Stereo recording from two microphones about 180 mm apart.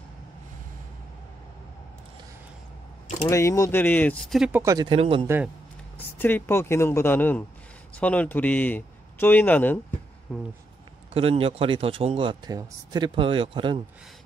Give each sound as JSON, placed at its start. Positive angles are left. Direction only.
{"t": 3.3, "sound": "speech", "side_deg": 15}
{"t": 4.5, "sound": "speech", "side_deg": -10}
{"t": 4.7, "sound": "speech", "side_deg": -30}
{"t": 5.2, "sound": "speech", "side_deg": -15}
{"t": 5.9, "sound": "speech", "side_deg": 10}
{"t": 11.1, "sound": "speech", "side_deg": -30}